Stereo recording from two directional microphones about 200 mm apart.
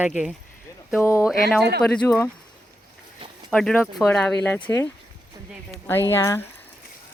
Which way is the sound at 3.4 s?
5° left (ahead or behind).